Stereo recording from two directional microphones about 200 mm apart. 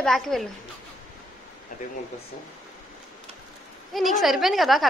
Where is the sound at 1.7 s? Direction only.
40° left (ahead or behind).